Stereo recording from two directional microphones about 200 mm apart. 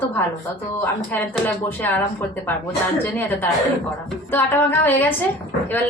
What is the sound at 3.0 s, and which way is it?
Speech, 10° left (ahead or behind).